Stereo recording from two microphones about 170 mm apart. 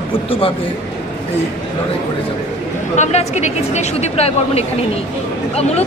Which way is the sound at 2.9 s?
45° left (ahead or behind).